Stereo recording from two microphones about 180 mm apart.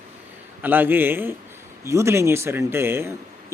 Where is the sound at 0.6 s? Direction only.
10° right (ahead or behind).